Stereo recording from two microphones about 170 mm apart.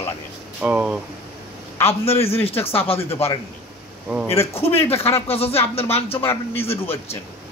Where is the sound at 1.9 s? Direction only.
35° left (ahead or behind).